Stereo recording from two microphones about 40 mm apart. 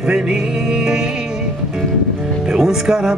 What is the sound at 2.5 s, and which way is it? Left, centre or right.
Speech, centre.